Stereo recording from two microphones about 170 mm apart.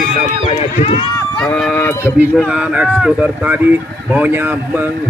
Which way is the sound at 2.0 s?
5° right (ahead or behind).